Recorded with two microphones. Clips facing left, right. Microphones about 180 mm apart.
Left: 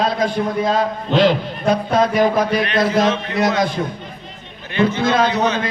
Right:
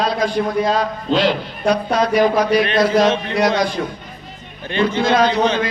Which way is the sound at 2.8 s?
25° left (ahead or behind).